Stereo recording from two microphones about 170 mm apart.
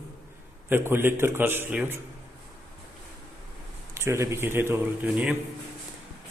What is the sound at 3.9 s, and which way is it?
Speech, 15° right (ahead or behind).